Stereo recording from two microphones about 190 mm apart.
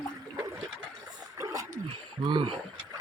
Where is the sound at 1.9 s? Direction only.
25° right (ahead or behind).